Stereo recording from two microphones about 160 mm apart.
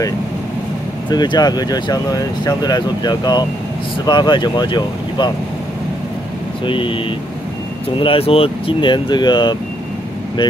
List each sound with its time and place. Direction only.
1.1 s speech: 25° left (ahead or behind)
6.6 s speech: 30° left (ahead or behind)
8.0 s speech: 35° left (ahead or behind)